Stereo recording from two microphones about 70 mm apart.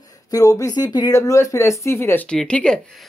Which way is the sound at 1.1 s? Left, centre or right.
Left.